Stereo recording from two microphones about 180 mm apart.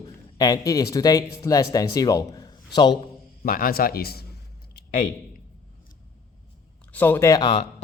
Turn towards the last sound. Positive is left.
turn(degrees=20)  # may be behind; listen again after turning